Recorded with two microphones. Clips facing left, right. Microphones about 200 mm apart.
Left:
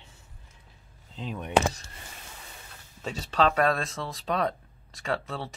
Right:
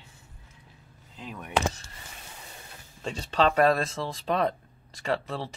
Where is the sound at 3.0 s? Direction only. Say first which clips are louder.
Even; 5° left (ahead or behind).